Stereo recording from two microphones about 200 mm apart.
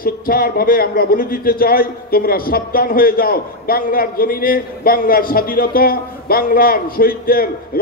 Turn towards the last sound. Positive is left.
turn(degrees=45)  # may be behind; listen again after turning